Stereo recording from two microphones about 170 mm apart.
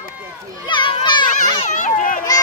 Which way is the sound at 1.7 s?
50° left (ahead or behind).